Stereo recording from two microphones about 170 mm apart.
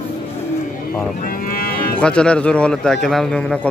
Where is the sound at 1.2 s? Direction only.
55° left (ahead or behind).